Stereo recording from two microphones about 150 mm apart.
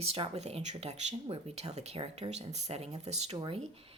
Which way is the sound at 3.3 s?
30° right (ahead or behind).